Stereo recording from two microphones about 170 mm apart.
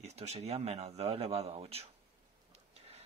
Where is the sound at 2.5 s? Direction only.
40° right (ahead or behind).